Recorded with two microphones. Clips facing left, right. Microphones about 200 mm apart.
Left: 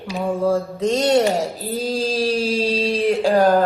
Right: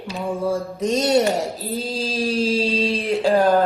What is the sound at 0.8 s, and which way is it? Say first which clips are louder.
Speech: left 1 dB; 15° right (ahead or behind).